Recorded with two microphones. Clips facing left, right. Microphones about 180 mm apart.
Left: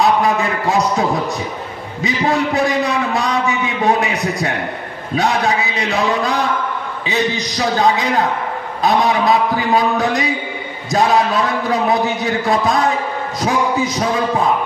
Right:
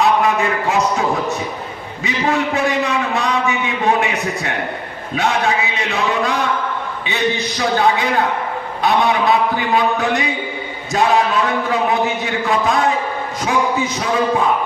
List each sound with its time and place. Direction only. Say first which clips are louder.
0.0 s a sound: even; 35° left (ahead or behind)
2.0 s a man's voice: left 1 dB; 35° left (ahead or behind)
7.5 s a man's voice: left 2 dB; 35° left (ahead or behind)